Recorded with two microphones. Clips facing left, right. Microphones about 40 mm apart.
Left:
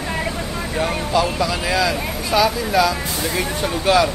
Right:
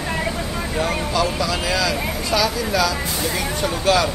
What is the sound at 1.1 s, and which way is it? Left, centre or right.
Speech, centre.